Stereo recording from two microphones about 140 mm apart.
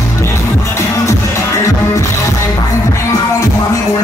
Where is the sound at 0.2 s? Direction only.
20° left (ahead or behind).